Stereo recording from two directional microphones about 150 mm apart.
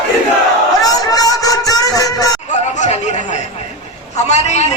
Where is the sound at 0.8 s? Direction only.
25° left (ahead or behind).